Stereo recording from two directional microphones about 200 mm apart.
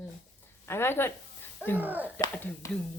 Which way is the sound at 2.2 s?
15° left (ahead or behind).